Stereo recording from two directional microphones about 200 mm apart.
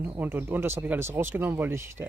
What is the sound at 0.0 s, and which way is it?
Speech, 10° right (ahead or behind).